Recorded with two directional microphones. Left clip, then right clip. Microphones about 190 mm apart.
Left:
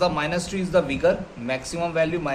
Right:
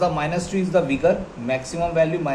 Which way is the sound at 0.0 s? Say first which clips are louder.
Right 1 dB; 30° left (ahead or behind).